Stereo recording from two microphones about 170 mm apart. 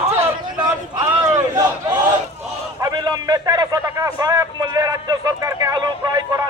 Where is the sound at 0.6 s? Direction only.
20° right (ahead or behind).